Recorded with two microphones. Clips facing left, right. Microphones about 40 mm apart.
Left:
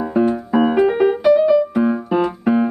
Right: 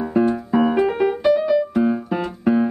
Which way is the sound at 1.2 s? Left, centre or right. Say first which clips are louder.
Left 4 dB; centre.